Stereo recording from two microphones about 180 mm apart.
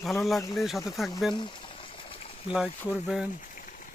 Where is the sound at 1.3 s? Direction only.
25° left (ahead or behind).